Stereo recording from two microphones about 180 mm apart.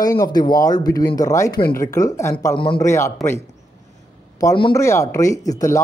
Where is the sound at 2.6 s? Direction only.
25° left (ahead or behind).